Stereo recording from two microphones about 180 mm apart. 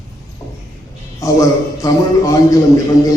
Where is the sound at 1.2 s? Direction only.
20° left (ahead or behind).